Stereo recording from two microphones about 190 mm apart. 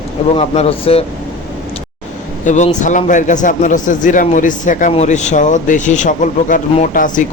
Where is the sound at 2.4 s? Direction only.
40° left (ahead or behind).